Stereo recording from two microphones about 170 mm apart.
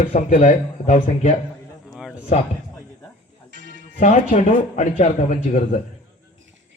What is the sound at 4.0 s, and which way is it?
Speech, 45° left (ahead or behind).